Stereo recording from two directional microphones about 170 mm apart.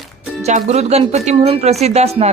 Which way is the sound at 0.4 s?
40° right (ahead or behind).